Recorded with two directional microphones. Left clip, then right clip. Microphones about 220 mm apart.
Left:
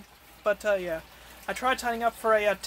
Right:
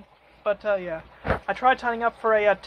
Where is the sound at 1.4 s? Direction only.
5° right (ahead or behind).